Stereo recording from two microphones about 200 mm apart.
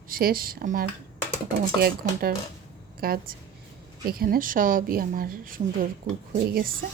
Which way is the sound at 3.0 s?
50° right (ahead or behind).